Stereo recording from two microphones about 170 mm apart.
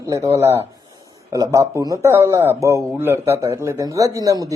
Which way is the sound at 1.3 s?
20° right (ahead or behind).